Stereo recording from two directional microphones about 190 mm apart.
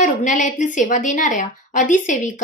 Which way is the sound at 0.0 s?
40° left (ahead or behind).